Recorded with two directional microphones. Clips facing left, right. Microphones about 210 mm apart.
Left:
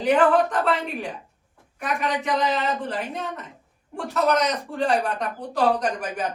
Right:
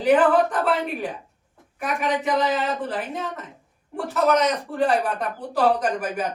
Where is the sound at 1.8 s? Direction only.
Centre (ahead or behind).